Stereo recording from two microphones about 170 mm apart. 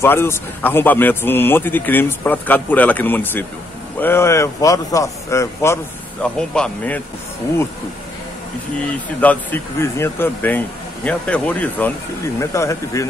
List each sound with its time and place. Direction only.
0.0 s a man's voice: 15° left (ahead or behind)
6.2 s speech: 5° left (ahead or behind)
9.2 s a man's voice: 10° left (ahead or behind)